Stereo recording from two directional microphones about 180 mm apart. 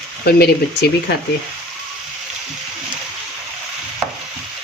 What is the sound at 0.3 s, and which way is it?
Speech, 60° left (ahead or behind).